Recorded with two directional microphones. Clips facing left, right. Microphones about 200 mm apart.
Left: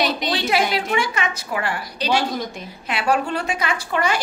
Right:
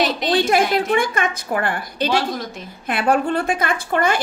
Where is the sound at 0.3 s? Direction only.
50° right (ahead or behind).